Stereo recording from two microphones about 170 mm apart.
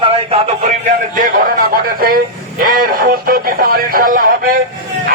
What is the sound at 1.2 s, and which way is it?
A man's voice, 55° right (ahead or behind).